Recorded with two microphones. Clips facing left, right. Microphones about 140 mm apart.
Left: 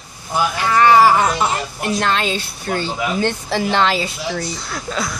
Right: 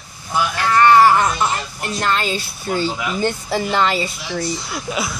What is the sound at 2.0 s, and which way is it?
Speech, 5° right (ahead or behind).